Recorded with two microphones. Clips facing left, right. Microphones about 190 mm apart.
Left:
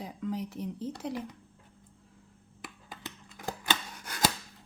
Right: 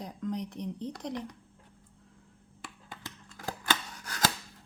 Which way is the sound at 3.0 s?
20° left (ahead or behind).